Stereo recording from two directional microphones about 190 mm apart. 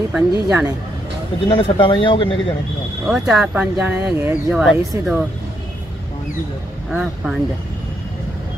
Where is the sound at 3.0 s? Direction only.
Centre (ahead or behind).